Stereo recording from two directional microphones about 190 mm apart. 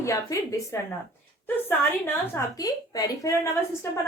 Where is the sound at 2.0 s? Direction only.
15° left (ahead or behind).